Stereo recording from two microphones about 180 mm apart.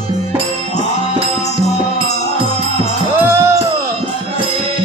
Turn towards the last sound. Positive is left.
turn(degrees=-15)  # may be behind; listen again after turning